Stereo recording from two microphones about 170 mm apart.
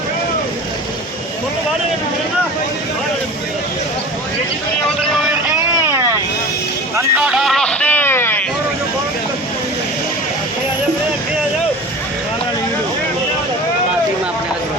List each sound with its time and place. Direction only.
5.8 s vehicle: 15° right (ahead or behind)
6.9 s vehicle: 5° right (ahead or behind); by 8.4 s 15° left (ahead or behind)